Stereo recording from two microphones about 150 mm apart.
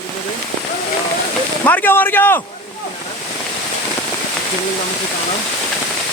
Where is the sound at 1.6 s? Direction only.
10° left (ahead or behind).